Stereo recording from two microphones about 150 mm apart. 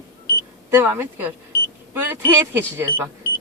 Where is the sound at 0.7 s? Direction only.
15° right (ahead or behind).